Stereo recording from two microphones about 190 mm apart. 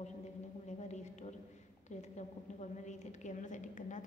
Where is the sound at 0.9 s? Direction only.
35° left (ahead or behind).